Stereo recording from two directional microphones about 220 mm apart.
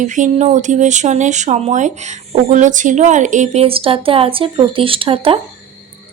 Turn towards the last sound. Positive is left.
turn(degrees=-25)  # may be behind; listen again after turning